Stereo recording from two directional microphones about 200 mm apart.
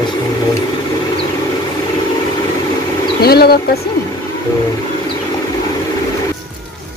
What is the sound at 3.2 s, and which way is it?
Speech, 50° left (ahead or behind).